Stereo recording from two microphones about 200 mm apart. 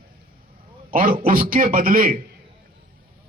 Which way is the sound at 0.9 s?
45° right (ahead or behind).